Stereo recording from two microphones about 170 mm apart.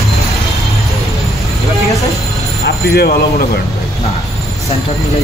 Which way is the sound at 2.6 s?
70° left (ahead or behind).